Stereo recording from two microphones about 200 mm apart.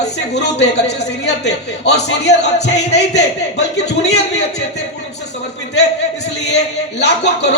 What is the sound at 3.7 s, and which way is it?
Speech, 55° left (ahead or behind).